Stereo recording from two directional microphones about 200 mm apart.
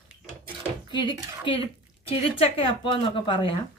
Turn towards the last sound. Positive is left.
turn(degrees=25)  # may be behind; listen again after turning